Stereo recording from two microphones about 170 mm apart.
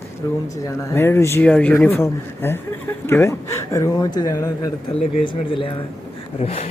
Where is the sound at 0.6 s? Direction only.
15° left (ahead or behind).